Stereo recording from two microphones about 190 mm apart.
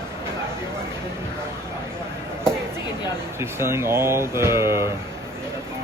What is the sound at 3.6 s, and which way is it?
Speech, 15° right (ahead or behind).